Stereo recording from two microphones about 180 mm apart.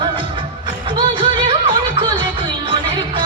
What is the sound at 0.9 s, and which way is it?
Music, 25° right (ahead or behind).